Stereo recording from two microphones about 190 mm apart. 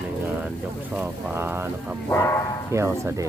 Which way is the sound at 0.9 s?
10° right (ahead or behind).